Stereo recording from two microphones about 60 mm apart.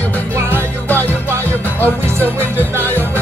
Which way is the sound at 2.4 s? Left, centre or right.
Right.